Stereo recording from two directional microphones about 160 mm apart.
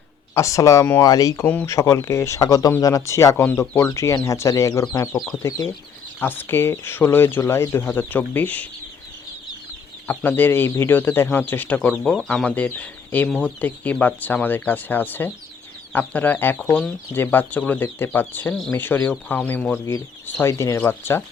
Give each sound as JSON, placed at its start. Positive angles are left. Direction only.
{"t": 0.3, "sound": "speech", "side_deg": 20}
{"t": 10.1, "sound": "speech", "side_deg": 10}